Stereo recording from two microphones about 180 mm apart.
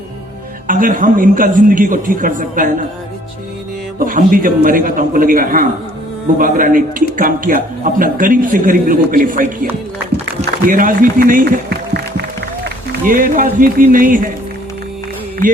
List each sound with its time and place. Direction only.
0.7 s a man's voice: 50° right (ahead or behind)
4.0 s a man's voice: 50° right (ahead or behind)
10.7 s a man's voice: 50° right (ahead or behind)